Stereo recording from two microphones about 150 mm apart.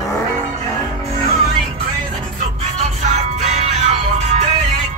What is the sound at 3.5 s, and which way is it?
Music, 50° right (ahead or behind).